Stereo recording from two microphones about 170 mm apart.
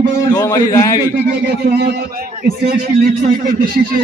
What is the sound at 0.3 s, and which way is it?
Speech, 20° left (ahead or behind).